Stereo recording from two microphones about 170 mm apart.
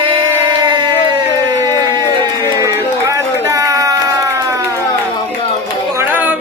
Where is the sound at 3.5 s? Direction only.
20° right (ahead or behind).